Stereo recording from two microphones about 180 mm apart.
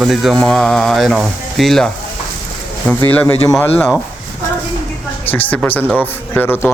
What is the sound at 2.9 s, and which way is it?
Speech, 10° left (ahead or behind).